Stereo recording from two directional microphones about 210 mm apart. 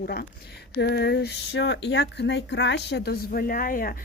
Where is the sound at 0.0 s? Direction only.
45° left (ahead or behind).